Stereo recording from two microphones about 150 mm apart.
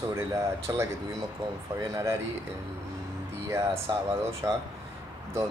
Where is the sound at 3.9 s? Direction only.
25° right (ahead or behind).